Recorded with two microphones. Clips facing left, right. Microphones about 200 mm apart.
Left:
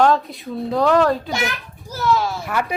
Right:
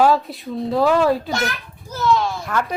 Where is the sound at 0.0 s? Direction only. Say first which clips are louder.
Even; 5° right (ahead or behind).